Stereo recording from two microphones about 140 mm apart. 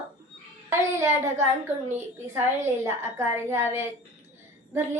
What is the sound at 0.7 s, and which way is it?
Speech, 20° right (ahead or behind).